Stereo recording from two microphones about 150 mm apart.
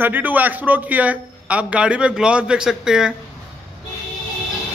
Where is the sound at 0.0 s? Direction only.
10° right (ahead or behind).